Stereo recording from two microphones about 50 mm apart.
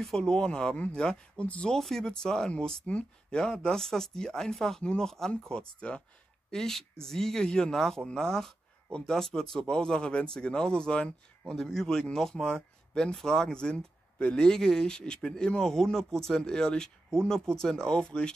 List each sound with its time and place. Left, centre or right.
0.0 s speech: centre
1.8 s speech: centre
6.5 s speech: centre
7.8 s speech: centre